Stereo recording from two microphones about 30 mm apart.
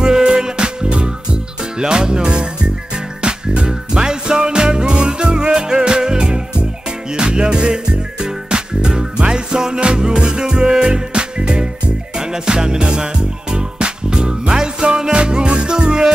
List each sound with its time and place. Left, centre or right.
0.4 s music: right